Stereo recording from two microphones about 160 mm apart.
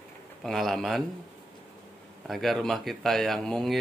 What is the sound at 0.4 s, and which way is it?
Speech, centre (ahead or behind).